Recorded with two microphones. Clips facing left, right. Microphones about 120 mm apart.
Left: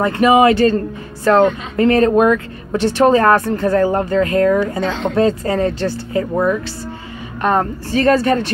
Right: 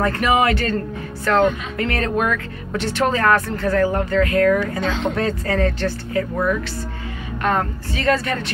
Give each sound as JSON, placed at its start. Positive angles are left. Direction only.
{"t": 0.0, "sound": "speech", "side_deg": 20}
{"t": 7.9, "sound": "speech", "side_deg": 35}